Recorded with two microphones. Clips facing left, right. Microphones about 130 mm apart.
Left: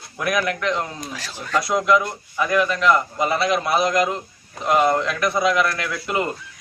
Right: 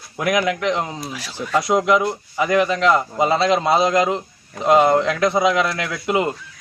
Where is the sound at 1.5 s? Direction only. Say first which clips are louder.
Right 2 dB; 20° right (ahead or behind).